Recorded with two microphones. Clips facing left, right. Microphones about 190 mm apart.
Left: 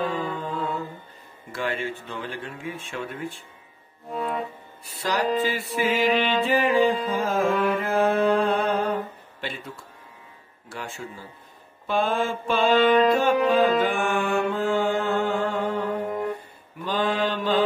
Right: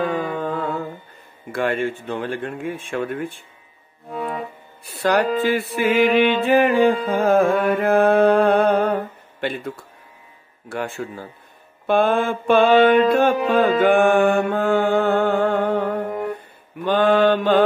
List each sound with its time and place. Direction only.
0.1 s music: 60° right (ahead or behind)
5.0 s music: 60° right (ahead or behind)
16.1 s music: centre (ahead or behind)
16.8 s mantra: 60° right (ahead or behind)